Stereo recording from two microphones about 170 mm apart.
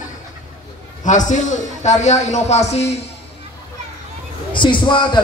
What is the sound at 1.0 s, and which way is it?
A man's voice, 45° left (ahead or behind).